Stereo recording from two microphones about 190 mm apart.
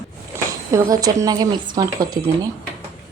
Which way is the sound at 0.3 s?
15° right (ahead or behind).